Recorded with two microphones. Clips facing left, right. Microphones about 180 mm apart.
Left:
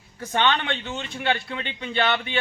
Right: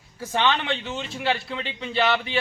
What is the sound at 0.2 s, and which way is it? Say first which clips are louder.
Speech: even; 5° right (ahead or behind).